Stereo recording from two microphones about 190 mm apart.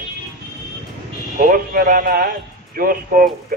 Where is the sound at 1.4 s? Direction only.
45° right (ahead or behind).